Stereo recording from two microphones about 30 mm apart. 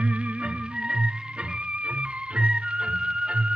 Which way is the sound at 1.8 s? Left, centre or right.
Right.